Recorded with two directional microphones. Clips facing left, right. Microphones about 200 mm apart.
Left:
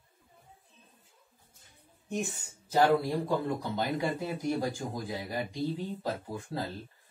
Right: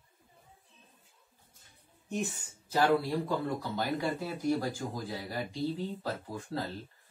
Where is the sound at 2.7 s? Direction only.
15° left (ahead or behind).